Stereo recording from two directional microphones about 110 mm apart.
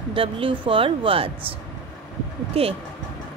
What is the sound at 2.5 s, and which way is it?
Speech, 65° right (ahead or behind).